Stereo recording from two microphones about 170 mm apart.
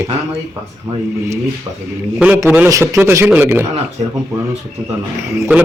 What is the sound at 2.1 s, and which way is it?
A man's voice, 10° right (ahead or behind).